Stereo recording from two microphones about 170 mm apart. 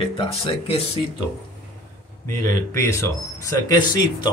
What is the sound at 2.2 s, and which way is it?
Speech, 15° left (ahead or behind).